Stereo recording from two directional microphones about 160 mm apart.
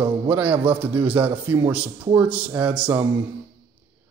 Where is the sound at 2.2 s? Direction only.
10° right (ahead or behind).